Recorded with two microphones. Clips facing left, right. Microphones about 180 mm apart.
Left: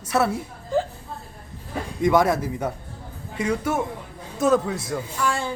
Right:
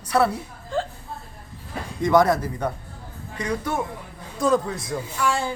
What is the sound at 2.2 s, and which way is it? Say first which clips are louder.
Speech: even; 10° left (ahead or behind).